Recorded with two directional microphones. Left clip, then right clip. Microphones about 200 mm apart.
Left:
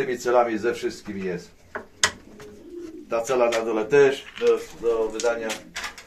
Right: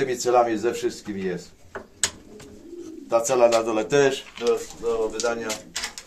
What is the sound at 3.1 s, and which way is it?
Speech, 30° right (ahead or behind).